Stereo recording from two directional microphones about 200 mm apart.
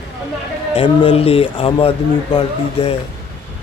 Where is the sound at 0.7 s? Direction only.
25° left (ahead or behind).